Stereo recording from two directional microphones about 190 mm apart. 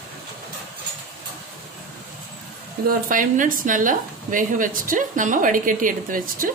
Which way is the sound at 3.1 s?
45° right (ahead or behind).